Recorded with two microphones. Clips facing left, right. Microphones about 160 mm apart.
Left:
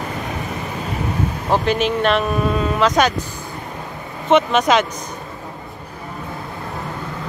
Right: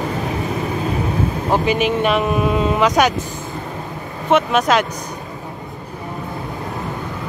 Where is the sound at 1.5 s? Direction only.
10° right (ahead or behind).